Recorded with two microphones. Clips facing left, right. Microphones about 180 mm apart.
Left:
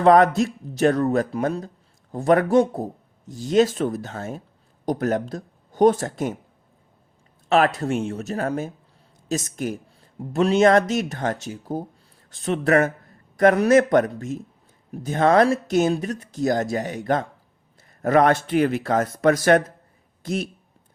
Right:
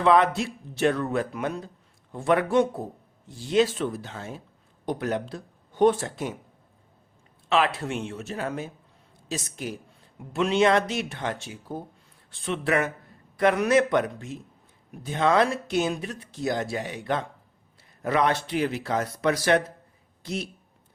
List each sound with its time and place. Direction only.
0.0 s speech: 45° left (ahead or behind)
7.5 s speech: 45° left (ahead or behind)